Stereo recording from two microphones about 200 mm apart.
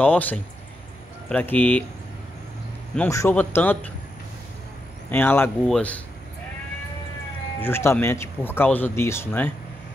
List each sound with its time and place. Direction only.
0.0 s speech: 10° left (ahead or behind)
3.0 s speech: 10° left (ahead or behind)
5.1 s speech: 10° left (ahead or behind)
7.6 s speech: 10° left (ahead or behind)